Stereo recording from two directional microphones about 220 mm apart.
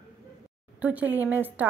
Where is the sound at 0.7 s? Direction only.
5° right (ahead or behind).